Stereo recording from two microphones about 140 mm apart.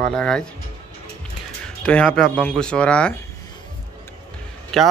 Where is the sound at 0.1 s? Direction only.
5° left (ahead or behind).